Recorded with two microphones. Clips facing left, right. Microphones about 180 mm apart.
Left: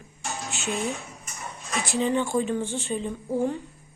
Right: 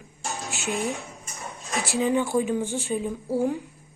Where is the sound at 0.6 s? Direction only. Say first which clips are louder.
Right 1 dB; 15° right (ahead or behind).